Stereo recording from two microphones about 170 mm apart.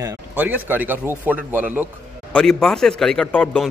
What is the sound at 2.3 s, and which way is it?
Speech, 5° left (ahead or behind).